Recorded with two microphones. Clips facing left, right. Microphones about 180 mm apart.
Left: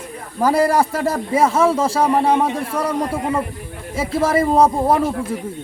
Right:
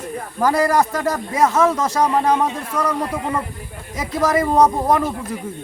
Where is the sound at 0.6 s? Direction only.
10° left (ahead or behind).